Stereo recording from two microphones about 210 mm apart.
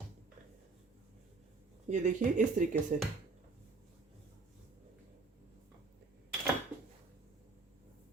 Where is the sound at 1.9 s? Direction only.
35° right (ahead or behind).